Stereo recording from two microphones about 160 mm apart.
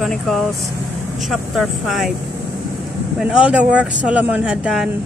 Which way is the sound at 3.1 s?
5° right (ahead or behind).